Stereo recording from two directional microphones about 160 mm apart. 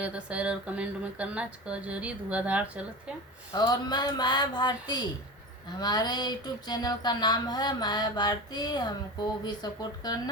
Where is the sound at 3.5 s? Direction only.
25° left (ahead or behind).